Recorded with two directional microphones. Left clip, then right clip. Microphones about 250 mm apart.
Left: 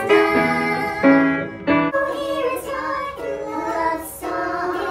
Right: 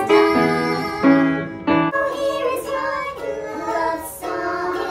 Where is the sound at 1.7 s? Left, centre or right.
Right.